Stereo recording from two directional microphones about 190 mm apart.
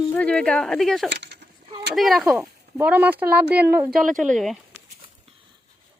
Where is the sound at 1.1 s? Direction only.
60° right (ahead or behind).